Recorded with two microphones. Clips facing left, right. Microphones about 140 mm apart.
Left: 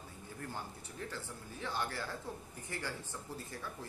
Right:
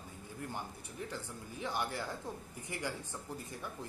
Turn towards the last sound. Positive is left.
turn(degrees=-15)  # may be behind; listen again after turning